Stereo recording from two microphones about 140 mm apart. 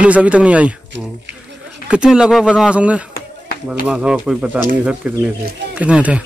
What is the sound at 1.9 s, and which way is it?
A man's voice, 5° right (ahead or behind).